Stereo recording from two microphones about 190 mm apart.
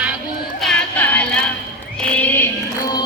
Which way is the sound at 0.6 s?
5° left (ahead or behind).